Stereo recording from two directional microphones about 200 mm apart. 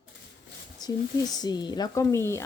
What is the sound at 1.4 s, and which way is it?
A woman's voice, 20° left (ahead or behind).